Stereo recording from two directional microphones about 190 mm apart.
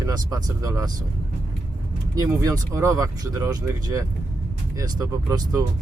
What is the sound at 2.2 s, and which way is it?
Speech, 20° right (ahead or behind).